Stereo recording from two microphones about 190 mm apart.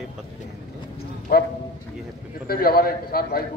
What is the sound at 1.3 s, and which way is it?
Speech, 55° left (ahead or behind).